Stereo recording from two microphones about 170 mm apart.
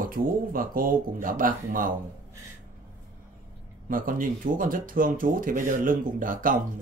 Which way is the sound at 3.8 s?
55° right (ahead or behind).